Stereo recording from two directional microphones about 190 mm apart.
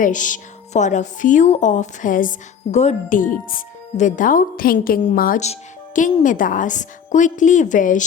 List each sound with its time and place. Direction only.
0.0 s a woman's voice: 40° left (ahead or behind)